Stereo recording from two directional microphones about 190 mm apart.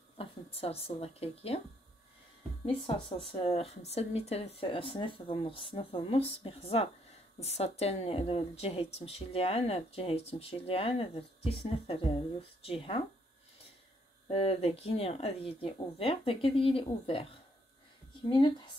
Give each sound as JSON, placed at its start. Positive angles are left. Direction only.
{"t": 0.2, "sound": "speech", "side_deg": 30}
{"t": 3.3, "sound": "speech", "side_deg": 30}
{"t": 14.2, "sound": "speech", "side_deg": 30}